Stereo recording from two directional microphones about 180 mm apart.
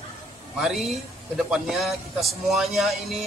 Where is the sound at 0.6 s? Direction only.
Centre (ahead or behind).